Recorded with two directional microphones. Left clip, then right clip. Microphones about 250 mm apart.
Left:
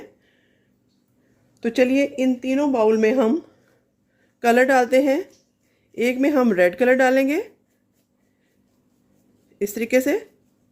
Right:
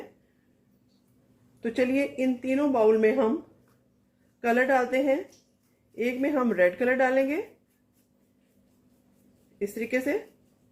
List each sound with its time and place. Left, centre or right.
1.6 s speech: left
4.4 s speech: left
9.6 s speech: left